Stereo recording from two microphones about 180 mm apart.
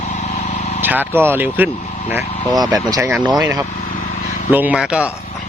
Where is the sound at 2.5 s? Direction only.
20° right (ahead or behind).